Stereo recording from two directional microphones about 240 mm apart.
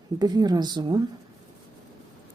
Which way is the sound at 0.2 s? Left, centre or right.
Centre.